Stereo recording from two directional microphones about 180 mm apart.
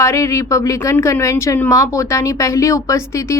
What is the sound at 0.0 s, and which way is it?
A woman's voice, 15° left (ahead or behind).